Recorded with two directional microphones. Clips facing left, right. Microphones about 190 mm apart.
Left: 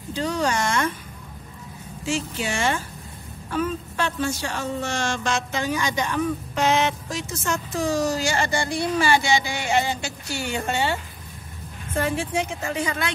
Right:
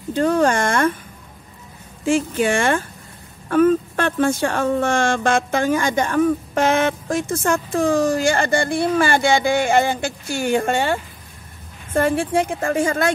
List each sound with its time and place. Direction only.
0.1 s speech: 55° right (ahead or behind)
2.0 s speech: 55° right (ahead or behind)